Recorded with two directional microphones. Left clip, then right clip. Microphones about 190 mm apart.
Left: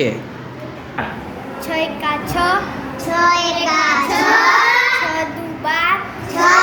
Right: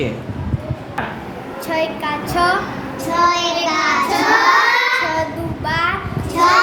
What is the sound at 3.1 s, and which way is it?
Child singing, 10° left (ahead or behind).